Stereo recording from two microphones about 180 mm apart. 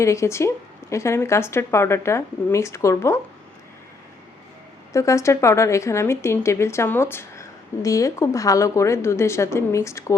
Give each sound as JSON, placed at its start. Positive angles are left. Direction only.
{"t": 0.0, "sound": "a woman's voice", "side_deg": 15}
{"t": 4.9, "sound": "a woman's voice", "side_deg": 15}